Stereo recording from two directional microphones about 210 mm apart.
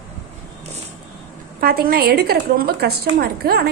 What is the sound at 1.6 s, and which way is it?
A woman's voice, 45° right (ahead or behind).